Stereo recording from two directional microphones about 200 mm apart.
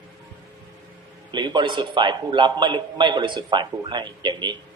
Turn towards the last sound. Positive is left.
turn(degrees=-20)  # may be behind; listen again after turning